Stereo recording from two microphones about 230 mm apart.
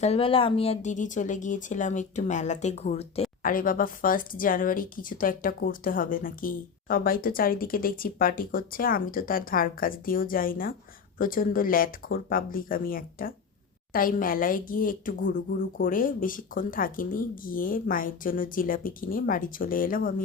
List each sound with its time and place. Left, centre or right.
0.0 s speech: left